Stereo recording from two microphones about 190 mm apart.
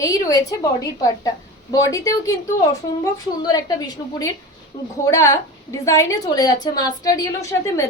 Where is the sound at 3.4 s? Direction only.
20° left (ahead or behind).